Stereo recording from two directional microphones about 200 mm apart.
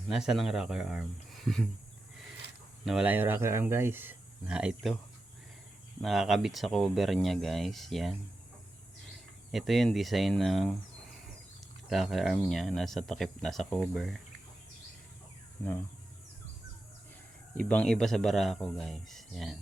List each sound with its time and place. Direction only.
0.1 s speech: centre (ahead or behind)
2.8 s speech: 5° right (ahead or behind)
6.0 s speech: centre (ahead or behind)
9.5 s speech: centre (ahead or behind)
11.9 s speech: centre (ahead or behind)
17.6 s speech: 5° left (ahead or behind)